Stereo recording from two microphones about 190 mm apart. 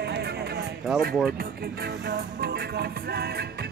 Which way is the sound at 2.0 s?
55° right (ahead or behind).